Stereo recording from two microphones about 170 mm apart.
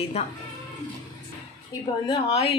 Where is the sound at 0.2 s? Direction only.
40° left (ahead or behind).